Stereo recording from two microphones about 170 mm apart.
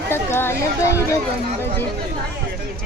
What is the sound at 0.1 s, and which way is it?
Chatter, 15° left (ahead or behind).